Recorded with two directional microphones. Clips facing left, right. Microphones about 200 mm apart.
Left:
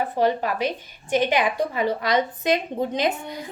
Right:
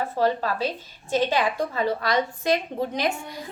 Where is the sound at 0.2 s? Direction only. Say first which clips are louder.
Left 1 dB; 15° left (ahead or behind).